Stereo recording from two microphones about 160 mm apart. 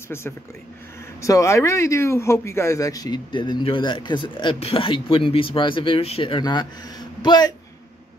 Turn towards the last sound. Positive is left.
turn(degrees=25)  # may be behind; listen again after turning